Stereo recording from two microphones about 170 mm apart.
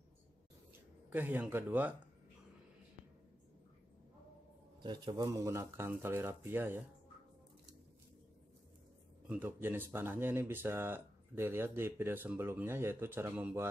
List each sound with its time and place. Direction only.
1.1 s speech: 10° right (ahead or behind)
4.8 s speech: 25° right (ahead or behind)
9.3 s speech: 10° right (ahead or behind)